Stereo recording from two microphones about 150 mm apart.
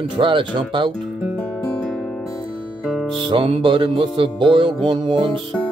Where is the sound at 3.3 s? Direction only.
35° right (ahead or behind).